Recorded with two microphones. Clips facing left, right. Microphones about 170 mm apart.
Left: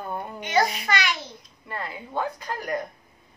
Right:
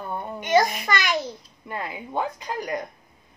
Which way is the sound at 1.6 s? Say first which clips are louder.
Right 2 dB; 15° right (ahead or behind).